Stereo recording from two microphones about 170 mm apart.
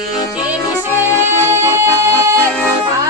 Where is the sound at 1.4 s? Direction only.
15° right (ahead or behind).